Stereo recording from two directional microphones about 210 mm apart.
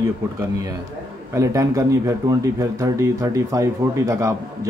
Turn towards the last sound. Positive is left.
turn(degrees=-15)  # may be behind; listen again after turning